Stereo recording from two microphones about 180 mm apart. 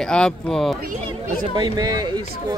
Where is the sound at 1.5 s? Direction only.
20° right (ahead or behind).